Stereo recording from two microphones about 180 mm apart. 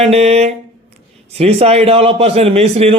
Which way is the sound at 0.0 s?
35° right (ahead or behind).